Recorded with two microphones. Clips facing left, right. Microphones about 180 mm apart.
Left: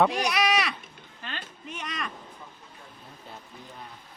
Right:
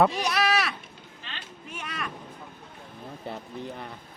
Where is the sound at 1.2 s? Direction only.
50° left (ahead or behind).